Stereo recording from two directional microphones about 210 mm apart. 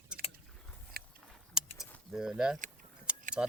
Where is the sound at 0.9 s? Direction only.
45° right (ahead or behind).